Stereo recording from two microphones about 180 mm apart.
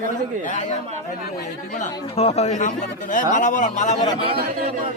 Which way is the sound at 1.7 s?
40° left (ahead or behind).